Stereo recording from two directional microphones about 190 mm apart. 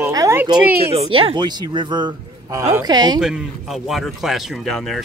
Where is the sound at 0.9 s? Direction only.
30° right (ahead or behind).